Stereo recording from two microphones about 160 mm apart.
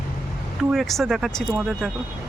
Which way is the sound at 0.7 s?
Centre (ahead or behind).